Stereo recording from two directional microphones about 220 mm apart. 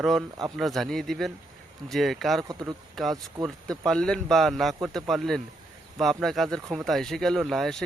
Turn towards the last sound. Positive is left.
turn(degrees=0)  # may be behind; listen again after turning